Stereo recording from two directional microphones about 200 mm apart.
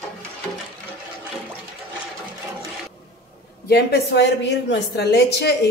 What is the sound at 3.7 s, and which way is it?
A woman's voice, 55° left (ahead or behind).